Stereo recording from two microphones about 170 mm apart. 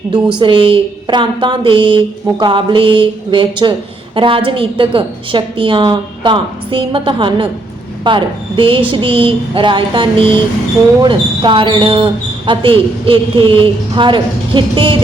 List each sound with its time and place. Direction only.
0.3 s a man's voice: 30° right (ahead or behind)